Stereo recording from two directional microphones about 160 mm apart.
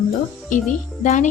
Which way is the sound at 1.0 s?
50° left (ahead or behind).